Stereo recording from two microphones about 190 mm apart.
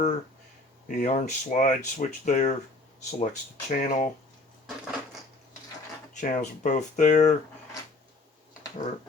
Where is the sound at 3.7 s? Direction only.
45° left (ahead or behind).